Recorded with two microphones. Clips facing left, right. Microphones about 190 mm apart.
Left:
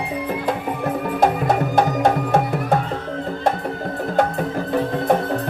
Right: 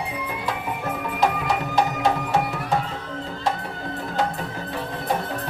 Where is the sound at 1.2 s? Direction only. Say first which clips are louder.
Left 5 dB; 50° left (ahead or behind).